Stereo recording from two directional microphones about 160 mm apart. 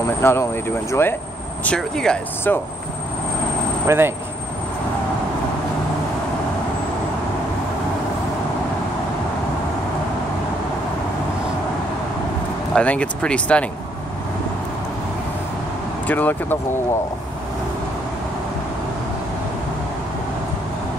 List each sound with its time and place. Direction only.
0.2 s speech: 15° left (ahead or behind)
3.8 s speech: 15° right (ahead or behind)
12.7 s speech: 10° left (ahead or behind)
16.1 s speech: 10° left (ahead or behind)